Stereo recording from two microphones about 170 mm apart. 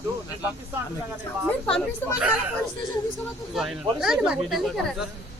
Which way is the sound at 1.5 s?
5° left (ahead or behind).